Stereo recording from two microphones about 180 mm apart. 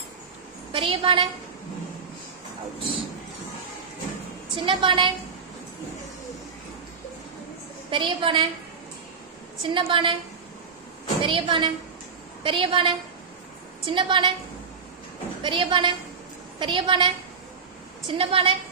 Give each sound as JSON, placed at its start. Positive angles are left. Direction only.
{"t": 0.7, "sound": "a woman's voice", "side_deg": -30}
{"t": 4.6, "sound": "a woman's voice", "side_deg": -25}
{"t": 7.9, "sound": "a woman's voice", "side_deg": -25}
{"t": 9.6, "sound": "a woman's voice", "side_deg": -30}
{"t": 11.2, "sound": "a woman's voice", "side_deg": -30}
{"t": 15.4, "sound": "a woman's voice", "side_deg": -25}
{"t": 18.1, "sound": "a woman's voice", "side_deg": -30}